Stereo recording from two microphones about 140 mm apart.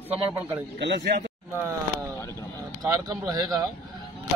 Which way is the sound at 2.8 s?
25° right (ahead or behind).